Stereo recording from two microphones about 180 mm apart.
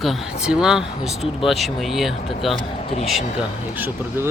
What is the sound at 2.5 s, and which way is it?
Speech, 30° left (ahead or behind).